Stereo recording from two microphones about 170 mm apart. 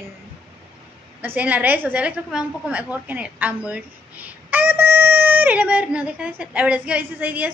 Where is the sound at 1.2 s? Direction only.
10° right (ahead or behind).